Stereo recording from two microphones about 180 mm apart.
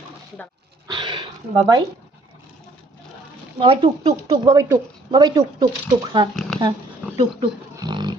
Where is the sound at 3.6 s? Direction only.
35° right (ahead or behind).